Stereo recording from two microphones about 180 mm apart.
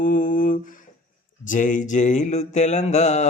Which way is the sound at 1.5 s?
45° left (ahead or behind).